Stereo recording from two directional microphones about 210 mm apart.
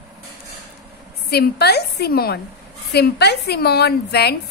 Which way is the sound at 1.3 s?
50° left (ahead or behind).